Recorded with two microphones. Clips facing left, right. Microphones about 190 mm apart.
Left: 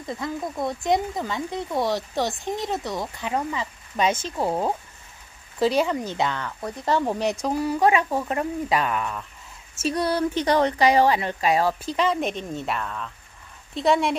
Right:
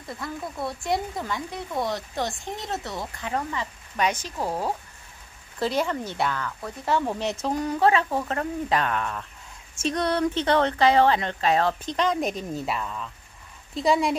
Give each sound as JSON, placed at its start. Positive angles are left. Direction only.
{"t": 0.1, "sound": "a woman's voice", "side_deg": 20}